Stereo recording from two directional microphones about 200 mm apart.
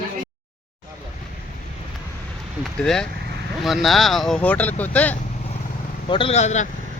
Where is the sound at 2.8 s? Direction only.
5° left (ahead or behind).